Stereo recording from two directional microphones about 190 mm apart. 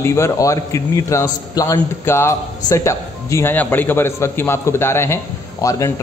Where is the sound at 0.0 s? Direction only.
15° left (ahead or behind).